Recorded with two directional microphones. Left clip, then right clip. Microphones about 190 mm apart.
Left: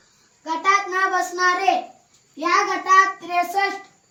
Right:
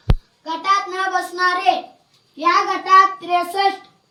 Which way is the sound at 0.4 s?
15° right (ahead or behind).